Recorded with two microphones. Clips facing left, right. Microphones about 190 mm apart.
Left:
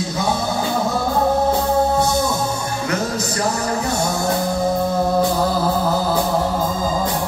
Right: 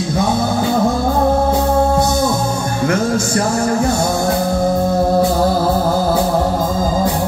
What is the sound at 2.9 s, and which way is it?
Music, 50° right (ahead or behind).